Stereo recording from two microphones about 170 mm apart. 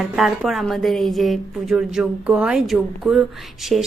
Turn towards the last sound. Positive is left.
turn(degrees=0)  # may be behind; listen again after turning